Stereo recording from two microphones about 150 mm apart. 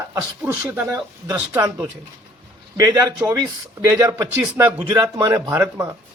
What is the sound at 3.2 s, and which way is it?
A man's voice, 15° right (ahead or behind).